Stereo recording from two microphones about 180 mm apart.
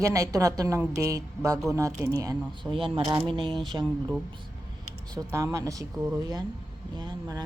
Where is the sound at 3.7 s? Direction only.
15° right (ahead or behind).